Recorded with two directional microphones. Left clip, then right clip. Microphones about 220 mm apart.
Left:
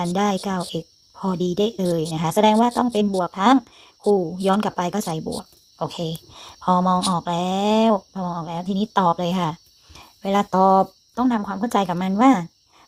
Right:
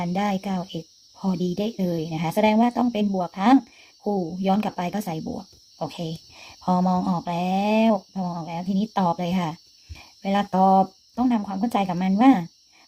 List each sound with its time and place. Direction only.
0.1 s speech: 20° left (ahead or behind)